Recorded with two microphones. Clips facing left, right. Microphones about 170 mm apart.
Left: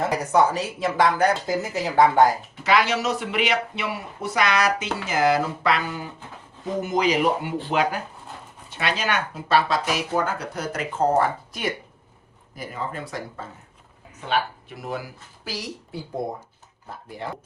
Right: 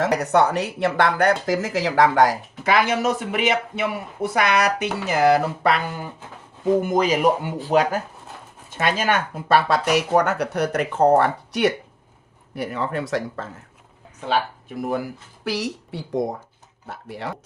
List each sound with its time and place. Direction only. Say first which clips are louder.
0.0 s speech: right 2 dB; 70° right (ahead or behind); by 2.3 s 90° right
2.6 s speech: right 2 dB; 50° right (ahead or behind); by 13.5 s 80° right
14.8 s speech: right 7 dB; 50° right (ahead or behind); by 16.2 s 90° right
16.9 s speech: right 2 dB; 75° right (ahead or behind)